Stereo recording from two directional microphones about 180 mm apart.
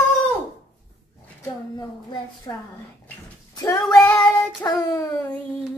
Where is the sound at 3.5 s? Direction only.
20° left (ahead or behind).